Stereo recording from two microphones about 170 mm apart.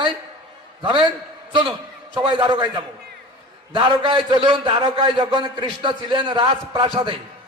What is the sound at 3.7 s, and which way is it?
A man's voice, 30° right (ahead or behind).